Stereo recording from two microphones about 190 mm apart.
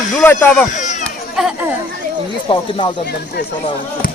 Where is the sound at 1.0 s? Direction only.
Centre (ahead or behind).